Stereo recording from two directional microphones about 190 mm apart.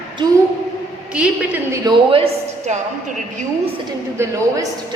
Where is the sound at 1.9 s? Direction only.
30° right (ahead or behind).